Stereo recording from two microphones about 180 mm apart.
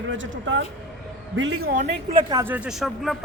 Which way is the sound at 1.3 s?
80° right.